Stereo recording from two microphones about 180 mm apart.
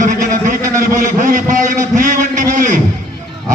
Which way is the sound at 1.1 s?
45° right (ahead or behind).